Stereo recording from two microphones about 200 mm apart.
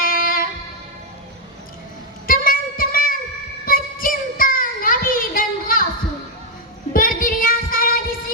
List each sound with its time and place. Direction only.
0.0 s music: 45° left (ahead or behind)
2.2 s a sound: 45° left (ahead or behind)
3.7 s child singing: 45° left (ahead or behind)
6.9 s child singing: 45° left (ahead or behind)